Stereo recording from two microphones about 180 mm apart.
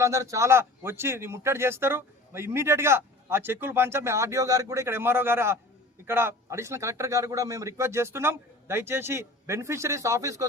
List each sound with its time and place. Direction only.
0.0 s speech: 15° right (ahead or behind)